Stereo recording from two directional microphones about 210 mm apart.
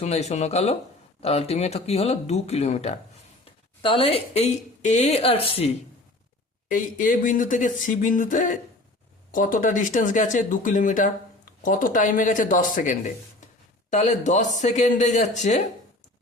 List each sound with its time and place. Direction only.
0.0 s a woman's voice: 30° left (ahead or behind)
6.7 s speech: 40° left (ahead or behind)